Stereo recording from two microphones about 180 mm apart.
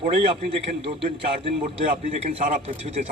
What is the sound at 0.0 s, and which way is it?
A man's voice, 35° right (ahead or behind).